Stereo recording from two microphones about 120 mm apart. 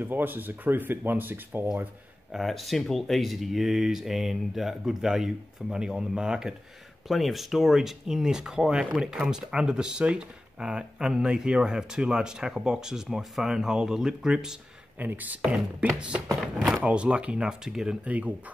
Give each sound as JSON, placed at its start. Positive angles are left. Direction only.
{"t": 0.0, "sound": "speech", "side_deg": -15}
{"t": 2.3, "sound": "speech", "side_deg": 0}
{"t": 15.0, "sound": "speech", "side_deg": -15}
{"t": 16.5, "sound": "speech", "side_deg": -5}